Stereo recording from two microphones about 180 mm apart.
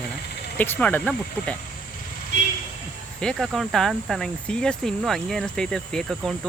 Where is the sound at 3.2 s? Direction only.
5° left (ahead or behind).